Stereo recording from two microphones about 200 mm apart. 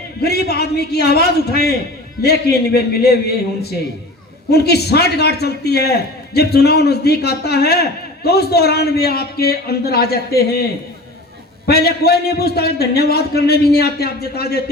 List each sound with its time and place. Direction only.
0.2 s a man's voice: 50° left (ahead or behind)